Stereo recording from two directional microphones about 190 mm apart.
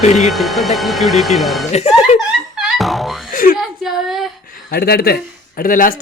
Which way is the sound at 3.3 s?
50° left (ahead or behind).